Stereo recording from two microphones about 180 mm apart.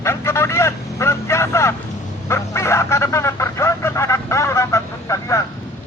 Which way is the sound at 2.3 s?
15° left (ahead or behind).